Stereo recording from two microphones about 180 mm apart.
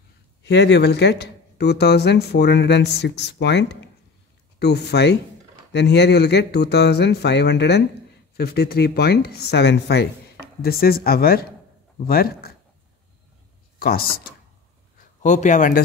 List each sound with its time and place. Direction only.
0.4 s speech: 75° left (ahead or behind); by 12.5 s 55° left (ahead or behind)
13.7 s speech: 55° left (ahead or behind)
15.2 s speech: 40° left (ahead or behind)